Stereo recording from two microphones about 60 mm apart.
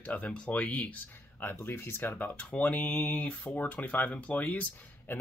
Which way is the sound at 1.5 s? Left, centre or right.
Left.